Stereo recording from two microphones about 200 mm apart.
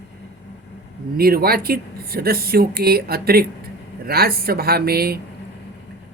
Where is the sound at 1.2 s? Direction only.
50° right (ahead or behind).